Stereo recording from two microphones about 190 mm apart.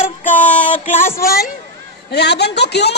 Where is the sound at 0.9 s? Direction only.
15° left (ahead or behind).